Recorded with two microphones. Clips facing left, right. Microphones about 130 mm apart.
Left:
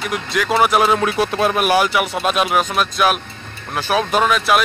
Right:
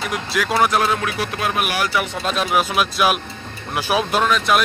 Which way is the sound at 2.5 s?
5° right (ahead or behind).